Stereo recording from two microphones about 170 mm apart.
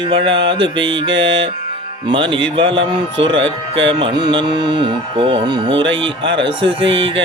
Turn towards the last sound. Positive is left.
turn(degrees=-30)  # may be behind; listen again after turning